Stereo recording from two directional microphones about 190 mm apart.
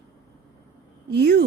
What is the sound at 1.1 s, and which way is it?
Speech, 60° right (ahead or behind).